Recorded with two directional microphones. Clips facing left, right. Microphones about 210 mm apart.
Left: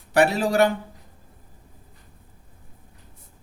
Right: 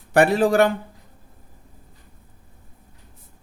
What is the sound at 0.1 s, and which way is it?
Speech, 50° right (ahead or behind).